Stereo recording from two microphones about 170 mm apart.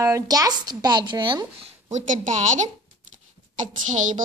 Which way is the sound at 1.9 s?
45° right (ahead or behind).